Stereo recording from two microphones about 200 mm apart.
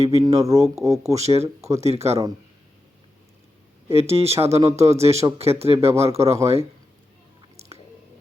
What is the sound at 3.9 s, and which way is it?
Speech, 30° right (ahead or behind).